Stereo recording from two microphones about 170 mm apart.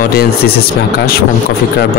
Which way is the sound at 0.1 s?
65° left (ahead or behind).